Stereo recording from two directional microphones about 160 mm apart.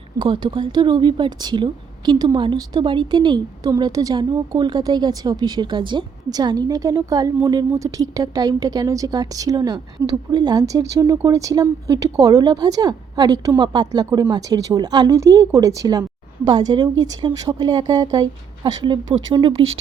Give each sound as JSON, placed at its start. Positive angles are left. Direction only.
{"t": 0.2, "sound": "a woman's voice", "side_deg": -30}